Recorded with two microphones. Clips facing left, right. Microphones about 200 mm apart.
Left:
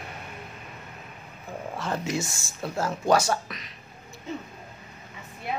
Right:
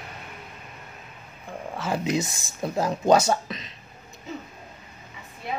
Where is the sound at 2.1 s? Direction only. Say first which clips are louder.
Right 4 dB; 20° right (ahead or behind).